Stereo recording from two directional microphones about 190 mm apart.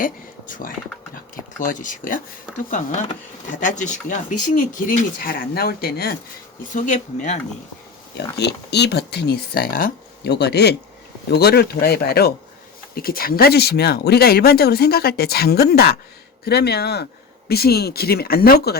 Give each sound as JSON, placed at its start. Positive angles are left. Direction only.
{"t": 0.0, "sound": "speech", "side_deg": 45}
{"t": 6.7, "sound": "speech", "side_deg": 40}
{"t": 8.4, "sound": "speech", "side_deg": 60}